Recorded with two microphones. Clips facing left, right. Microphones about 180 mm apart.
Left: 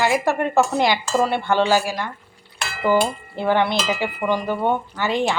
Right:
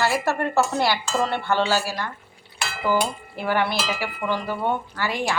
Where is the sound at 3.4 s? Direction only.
20° left (ahead or behind).